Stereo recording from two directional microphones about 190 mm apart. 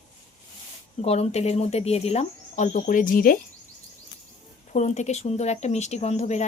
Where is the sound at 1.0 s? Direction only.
35° left (ahead or behind).